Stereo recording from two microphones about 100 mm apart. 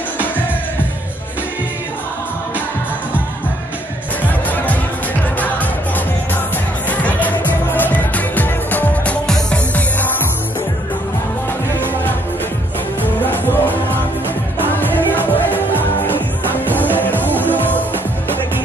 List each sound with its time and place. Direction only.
6.9 s music: 15° left (ahead or behind)
13.0 s music: 20° left (ahead or behind)